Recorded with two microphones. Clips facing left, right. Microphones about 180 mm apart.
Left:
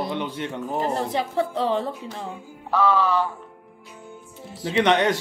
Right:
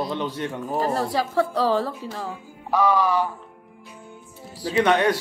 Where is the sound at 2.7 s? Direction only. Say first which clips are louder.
Even; 15° right (ahead or behind).